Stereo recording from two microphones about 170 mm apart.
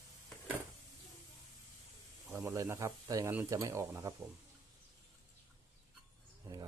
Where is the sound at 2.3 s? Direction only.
15° right (ahead or behind).